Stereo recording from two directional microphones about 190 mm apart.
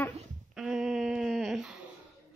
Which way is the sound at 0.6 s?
5° right (ahead or behind).